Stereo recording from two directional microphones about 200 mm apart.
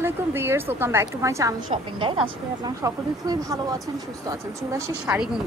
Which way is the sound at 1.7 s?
25° right (ahead or behind).